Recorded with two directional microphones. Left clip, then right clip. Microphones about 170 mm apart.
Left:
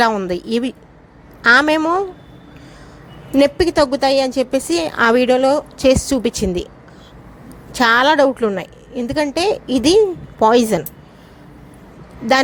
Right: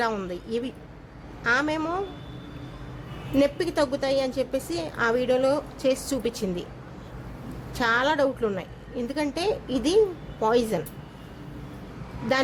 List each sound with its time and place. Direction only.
0.3 s a woman's voice: 50° left (ahead or behind)
3.3 s a woman's voice: 40° left (ahead or behind)
7.7 s a woman's voice: 45° left (ahead or behind)